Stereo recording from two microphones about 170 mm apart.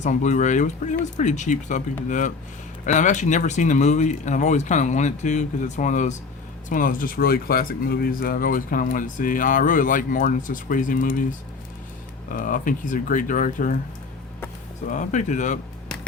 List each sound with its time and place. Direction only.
0.0 s speech: 45° left (ahead or behind)
12.3 s speech: 55° left (ahead or behind)
14.8 s speech: 45° left (ahead or behind)